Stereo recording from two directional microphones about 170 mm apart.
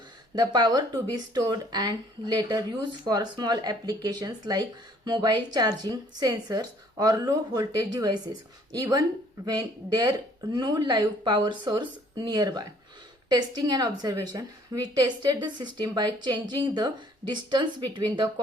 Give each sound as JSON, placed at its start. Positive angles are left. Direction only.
{"t": 0.3, "sound": "a woman's voice", "side_deg": -25}